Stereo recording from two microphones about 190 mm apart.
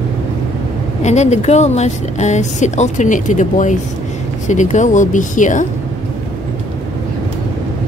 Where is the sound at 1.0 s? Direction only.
35° left (ahead or behind).